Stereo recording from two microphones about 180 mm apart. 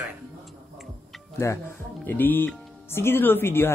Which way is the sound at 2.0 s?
10° left (ahead or behind).